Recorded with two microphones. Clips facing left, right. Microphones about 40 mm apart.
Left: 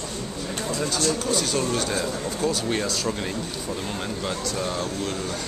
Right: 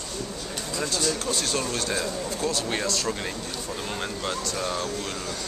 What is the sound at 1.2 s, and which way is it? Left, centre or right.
Speech, centre.